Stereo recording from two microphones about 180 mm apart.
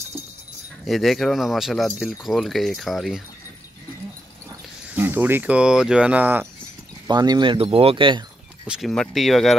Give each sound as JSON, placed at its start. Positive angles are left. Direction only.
{"t": 0.8, "sound": "speech", "side_deg": 0}
{"t": 4.9, "sound": "speech", "side_deg": -10}
{"t": 7.1, "sound": "speech", "side_deg": -25}
{"t": 8.6, "sound": "speech", "side_deg": 0}